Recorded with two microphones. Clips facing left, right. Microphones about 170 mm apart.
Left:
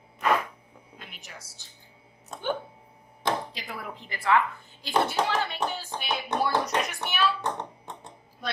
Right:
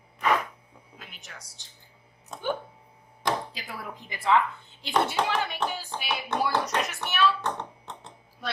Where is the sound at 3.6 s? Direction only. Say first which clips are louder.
Left 1 dB; 15° right (ahead or behind).